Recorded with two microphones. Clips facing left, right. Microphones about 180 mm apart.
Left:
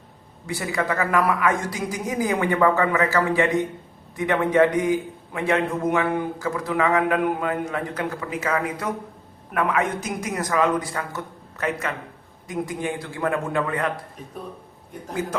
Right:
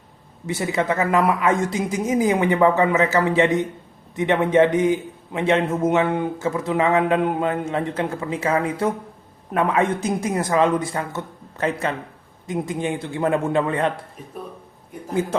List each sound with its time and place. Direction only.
0.4 s a man's voice: 20° right (ahead or behind)